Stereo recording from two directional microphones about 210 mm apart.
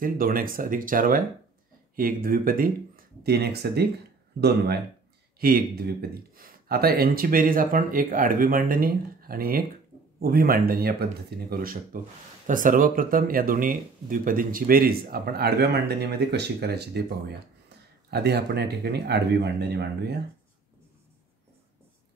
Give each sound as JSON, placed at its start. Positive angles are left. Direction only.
{"t": 0.0, "sound": "speech", "side_deg": -45}